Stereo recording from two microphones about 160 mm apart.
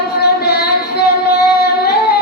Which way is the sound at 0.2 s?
85° left.